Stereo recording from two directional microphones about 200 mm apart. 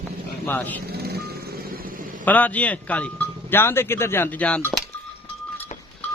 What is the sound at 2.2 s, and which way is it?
Speech, 10° left (ahead or behind).